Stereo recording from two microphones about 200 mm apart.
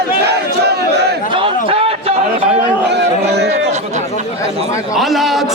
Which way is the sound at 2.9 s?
55° right (ahead or behind).